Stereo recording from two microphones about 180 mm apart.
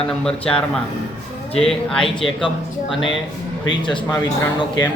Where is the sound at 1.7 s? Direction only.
5° left (ahead or behind).